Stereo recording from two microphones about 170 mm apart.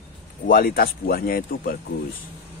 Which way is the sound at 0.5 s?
60° left (ahead or behind).